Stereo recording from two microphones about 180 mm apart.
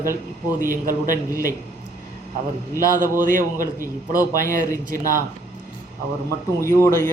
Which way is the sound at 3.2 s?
50° right (ahead or behind).